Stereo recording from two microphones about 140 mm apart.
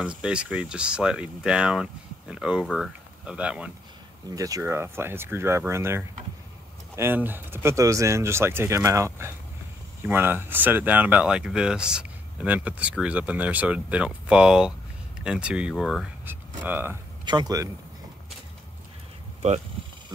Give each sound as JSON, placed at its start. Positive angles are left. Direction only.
{"t": 0.0, "sound": "speech", "side_deg": -5}
{"t": 4.4, "sound": "speech", "side_deg": -25}
{"t": 16.3, "sound": "speech", "side_deg": -15}
{"t": 17.2, "sound": "speech", "side_deg": -30}